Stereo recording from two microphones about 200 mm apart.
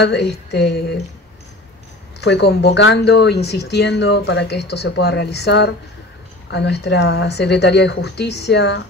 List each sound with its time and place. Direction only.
0.0 s speech: 55° left (ahead or behind)
2.1 s speech: 55° left (ahead or behind)